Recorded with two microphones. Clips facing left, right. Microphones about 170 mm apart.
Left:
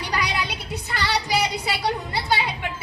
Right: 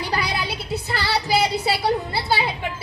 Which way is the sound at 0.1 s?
30° right (ahead or behind).